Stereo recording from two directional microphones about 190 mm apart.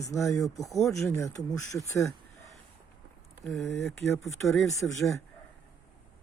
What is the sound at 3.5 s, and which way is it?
Speech, centre (ahead or behind).